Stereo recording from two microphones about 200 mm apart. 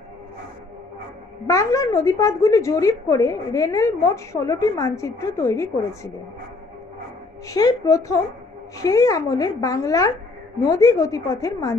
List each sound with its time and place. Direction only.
1.5 s a woman's voice: 15° left (ahead or behind)
7.4 s a woman's voice: 15° left (ahead or behind)